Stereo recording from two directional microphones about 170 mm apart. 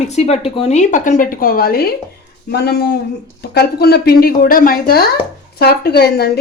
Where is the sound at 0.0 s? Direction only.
40° left (ahead or behind); by 1.9 s 60° left (ahead or behind).